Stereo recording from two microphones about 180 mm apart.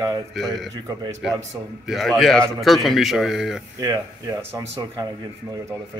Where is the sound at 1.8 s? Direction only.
Centre (ahead or behind).